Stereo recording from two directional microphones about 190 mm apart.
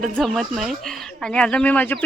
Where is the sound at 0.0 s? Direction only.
Centre (ahead or behind).